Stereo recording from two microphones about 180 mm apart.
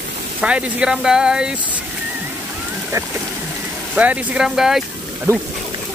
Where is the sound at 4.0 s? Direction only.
10° right (ahead or behind).